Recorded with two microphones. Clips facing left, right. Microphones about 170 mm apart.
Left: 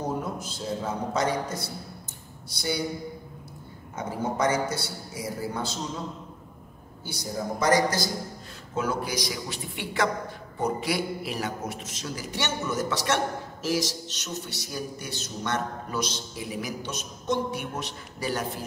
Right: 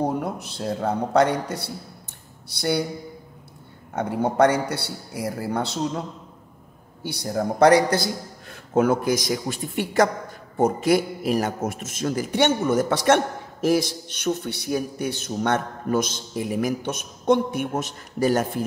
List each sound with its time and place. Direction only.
0.0 s a man's voice: 60° right (ahead or behind)
3.9 s a man's voice: 65° right (ahead or behind)
7.0 s a man's voice: 65° right (ahead or behind)
8.7 s a man's voice: 50° right (ahead or behind)